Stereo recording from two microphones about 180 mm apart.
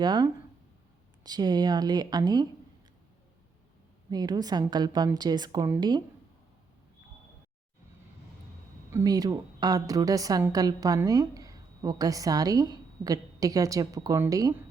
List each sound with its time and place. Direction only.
0.0 s a woman's voice: 25° right (ahead or behind)
4.1 s a woman's voice: 20° right (ahead or behind)
8.9 s a woman's voice: 15° right (ahead or behind)